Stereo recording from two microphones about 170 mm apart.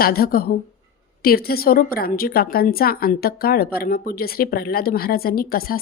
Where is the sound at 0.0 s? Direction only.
60° left (ahead or behind).